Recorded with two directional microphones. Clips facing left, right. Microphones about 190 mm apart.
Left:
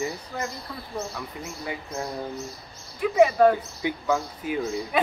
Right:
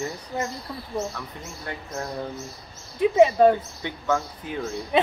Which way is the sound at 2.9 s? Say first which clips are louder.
Right 2 dB; 25° right (ahead or behind).